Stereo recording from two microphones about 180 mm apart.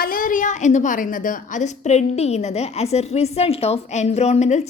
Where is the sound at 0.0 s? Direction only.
50° left (ahead or behind).